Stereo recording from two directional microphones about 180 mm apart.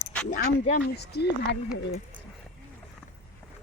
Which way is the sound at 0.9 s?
65° left (ahead or behind).